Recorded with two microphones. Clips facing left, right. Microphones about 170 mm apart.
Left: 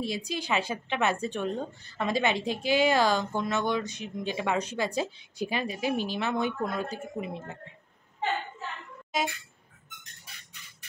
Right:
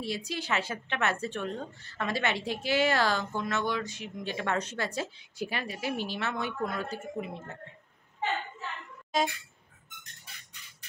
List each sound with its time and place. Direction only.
0.0 s a woman's voice: 15° left (ahead or behind)